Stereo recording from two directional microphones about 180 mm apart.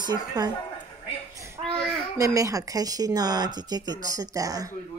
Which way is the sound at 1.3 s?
15° right (ahead or behind).